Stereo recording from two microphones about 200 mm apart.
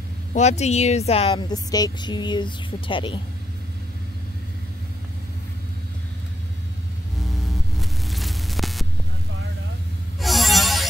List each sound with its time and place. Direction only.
0.3 s speech: 35° left (ahead or behind)
1.5 s a woman's voice: 20° left (ahead or behind)
7.8 s a sound: centre (ahead or behind)
10.2 s music: centre (ahead or behind)